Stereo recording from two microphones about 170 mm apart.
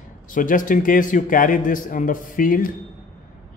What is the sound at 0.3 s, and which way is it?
Speech, 50° left (ahead or behind).